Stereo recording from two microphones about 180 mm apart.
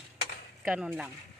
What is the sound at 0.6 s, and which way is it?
Speech, 5° right (ahead or behind).